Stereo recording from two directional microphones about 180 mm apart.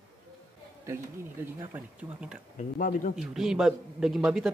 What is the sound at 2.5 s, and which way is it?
Speech, 45° left (ahead or behind).